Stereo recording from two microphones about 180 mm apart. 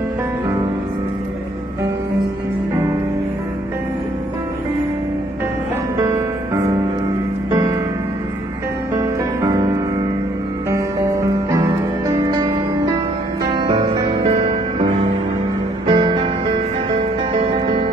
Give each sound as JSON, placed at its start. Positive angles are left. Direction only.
{"t": 6.0, "sound": "music", "side_deg": -15}
{"t": 8.9, "sound": "music", "side_deg": -20}
{"t": 15.9, "sound": "music", "side_deg": -25}